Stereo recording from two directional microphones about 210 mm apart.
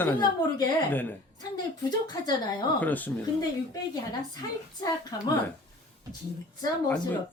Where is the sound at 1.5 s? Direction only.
20° left (ahead or behind).